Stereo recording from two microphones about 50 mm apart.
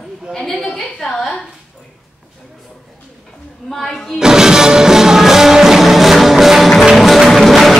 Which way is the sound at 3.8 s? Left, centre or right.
Centre.